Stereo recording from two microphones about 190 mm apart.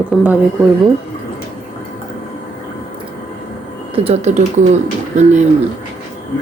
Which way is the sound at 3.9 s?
30° right (ahead or behind).